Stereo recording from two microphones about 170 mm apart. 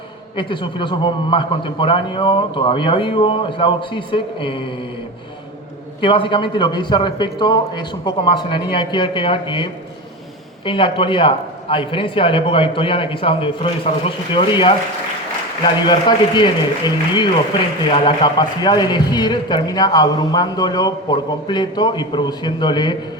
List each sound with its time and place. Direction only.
0.3 s a man's voice: 30° left (ahead or behind)
6.0 s a man's voice: 30° left (ahead or behind)
10.7 s a man's voice: 30° left (ahead or behind)